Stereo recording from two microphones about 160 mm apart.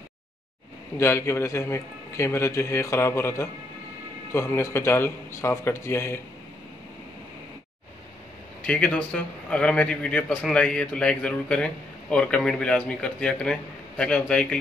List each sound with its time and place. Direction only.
0.9 s a man's voice: 15° left (ahead or behind)
8.6 s a man's voice: 5° left (ahead or behind)